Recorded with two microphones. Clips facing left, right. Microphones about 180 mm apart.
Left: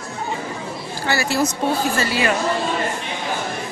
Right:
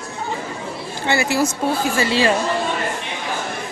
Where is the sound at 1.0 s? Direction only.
20° right (ahead or behind).